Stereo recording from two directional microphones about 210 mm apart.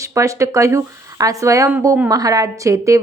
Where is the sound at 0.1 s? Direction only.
15° right (ahead or behind).